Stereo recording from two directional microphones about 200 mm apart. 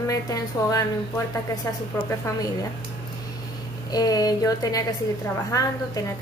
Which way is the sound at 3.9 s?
20° left (ahead or behind).